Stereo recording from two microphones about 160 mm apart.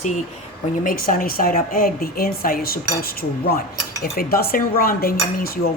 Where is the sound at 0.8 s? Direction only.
65° left (ahead or behind).